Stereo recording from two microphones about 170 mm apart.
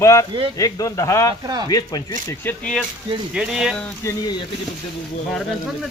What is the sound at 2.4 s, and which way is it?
A man's voice, 5° left (ahead or behind).